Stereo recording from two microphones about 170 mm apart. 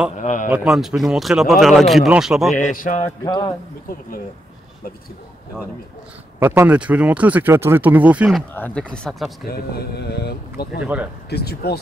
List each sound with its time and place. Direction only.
0.2 s a man's voice: 45° left (ahead or behind)
0.5 s speech: centre (ahead or behind)
2.5 s a man's voice: 50° left (ahead or behind)
3.3 s a man's voice: 25° left (ahead or behind)
6.4 s speech: 15° right (ahead or behind)
8.5 s speech: 10° left (ahead or behind)
9.5 s speech: 70° left (ahead or behind)
10.8 s speech: 5° right (ahead or behind)
11.2 s speech: 70° left (ahead or behind)